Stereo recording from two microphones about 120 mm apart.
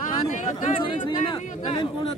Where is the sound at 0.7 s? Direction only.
45° left (ahead or behind).